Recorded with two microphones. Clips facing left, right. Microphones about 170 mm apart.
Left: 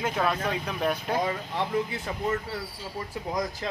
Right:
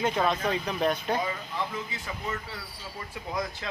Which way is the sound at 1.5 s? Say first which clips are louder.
Left 6 dB; 55° left (ahead or behind).